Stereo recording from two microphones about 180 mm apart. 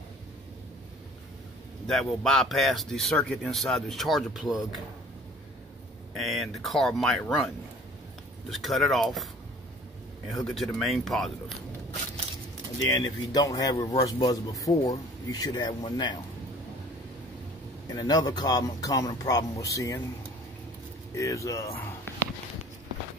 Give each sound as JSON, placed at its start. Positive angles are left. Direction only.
{"t": 1.9, "sound": "speech", "side_deg": 0}
{"t": 6.2, "sound": "speech", "side_deg": 0}
{"t": 8.5, "sound": "speech", "side_deg": 0}
{"t": 10.4, "sound": "speech", "side_deg": 0}
{"t": 12.9, "sound": "speech", "side_deg": 20}
{"t": 17.9, "sound": "speech", "side_deg": 25}
{"t": 21.1, "sound": "speech", "side_deg": 15}